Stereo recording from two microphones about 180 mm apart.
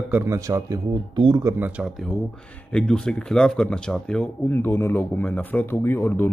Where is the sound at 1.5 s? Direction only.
10° right (ahead or behind).